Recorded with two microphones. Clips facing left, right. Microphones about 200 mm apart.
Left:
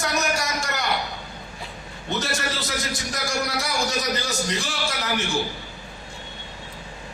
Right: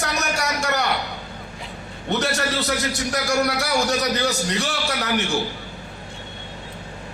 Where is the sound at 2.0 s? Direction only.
65° right (ahead or behind).